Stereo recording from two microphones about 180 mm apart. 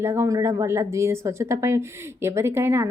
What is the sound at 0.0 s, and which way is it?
Speech, 15° right (ahead or behind).